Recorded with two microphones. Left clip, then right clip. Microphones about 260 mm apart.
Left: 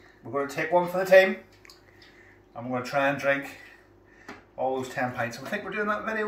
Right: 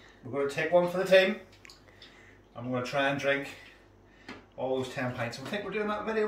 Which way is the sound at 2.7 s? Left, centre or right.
Centre.